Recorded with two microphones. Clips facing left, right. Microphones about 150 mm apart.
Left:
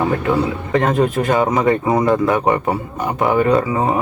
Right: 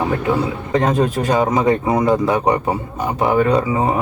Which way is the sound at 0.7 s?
20° right (ahead or behind).